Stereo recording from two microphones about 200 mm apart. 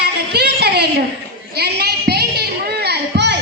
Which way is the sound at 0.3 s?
55° right (ahead or behind).